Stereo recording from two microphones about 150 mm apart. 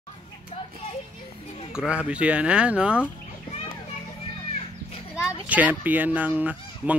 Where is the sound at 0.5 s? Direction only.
45° left (ahead or behind).